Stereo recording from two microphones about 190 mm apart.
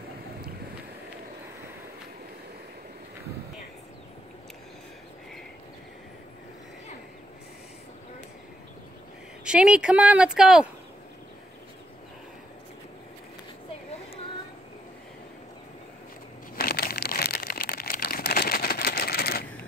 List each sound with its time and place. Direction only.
9.4 s a woman's voice: 5° right (ahead or behind)
16.5 s crumpling: 50° left (ahead or behind)